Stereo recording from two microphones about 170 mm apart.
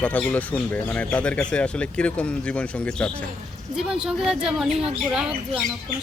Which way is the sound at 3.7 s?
5° right (ahead or behind).